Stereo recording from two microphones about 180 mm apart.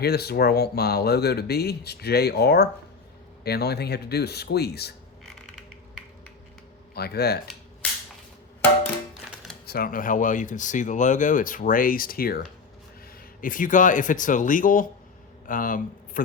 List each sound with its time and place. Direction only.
0.0 s speech: 60° left (ahead or behind)
6.9 s speech: 60° left (ahead or behind)
9.6 s speech: 55° left (ahead or behind)
13.4 s speech: 50° left (ahead or behind)